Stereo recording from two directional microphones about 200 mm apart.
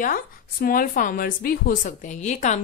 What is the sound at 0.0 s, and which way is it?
Speech, 45° left (ahead or behind).